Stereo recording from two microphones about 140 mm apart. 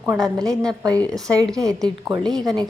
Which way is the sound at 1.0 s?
5° left (ahead or behind).